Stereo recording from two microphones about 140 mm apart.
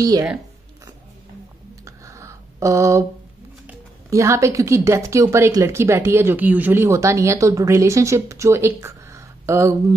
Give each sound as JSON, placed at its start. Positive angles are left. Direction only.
{"t": 0.0, "sound": "speech", "side_deg": -25}
{"t": 1.9, "sound": "a sound", "side_deg": -20}
{"t": 4.1, "sound": "speech", "side_deg": -20}